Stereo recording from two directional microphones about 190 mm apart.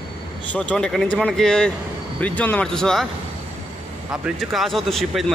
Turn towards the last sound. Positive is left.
turn(degrees=0)  # may be behind; listen again after turning